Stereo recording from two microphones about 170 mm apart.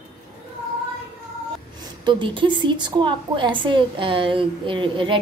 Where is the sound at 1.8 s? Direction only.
25° right (ahead or behind).